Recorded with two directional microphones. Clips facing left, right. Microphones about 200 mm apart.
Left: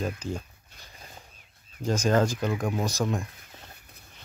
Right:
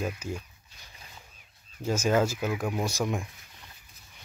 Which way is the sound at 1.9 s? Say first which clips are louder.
Left 1 dB; 10° right (ahead or behind).